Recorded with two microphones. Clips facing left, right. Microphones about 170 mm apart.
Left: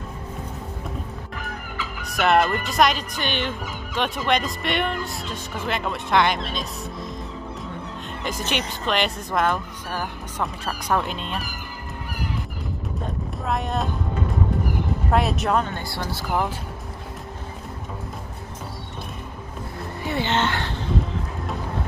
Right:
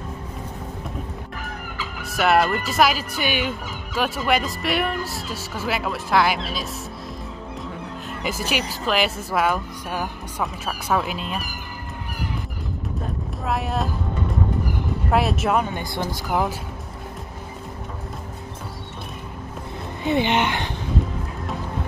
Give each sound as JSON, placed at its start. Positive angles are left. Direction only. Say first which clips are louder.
{"t": 2.0, "sound": "fowl", "louder": "even", "side_deg": -5}
{"t": 8.2, "sound": "fowl", "louder": "right 1 dB", "side_deg": -5}
{"t": 13.5, "sound": "fowl", "louder": "right 1 dB", "side_deg": -5}
{"t": 15.0, "sound": "speech", "louder": "right 1 dB", "side_deg": 0}
{"t": 20.0, "sound": "speech", "louder": "right 3 dB", "side_deg": -20}